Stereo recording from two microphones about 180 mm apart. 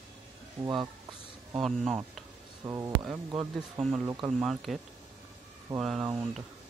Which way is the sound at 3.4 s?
5° right (ahead or behind).